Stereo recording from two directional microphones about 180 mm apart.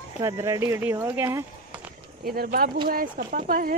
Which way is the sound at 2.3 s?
55° right (ahead or behind).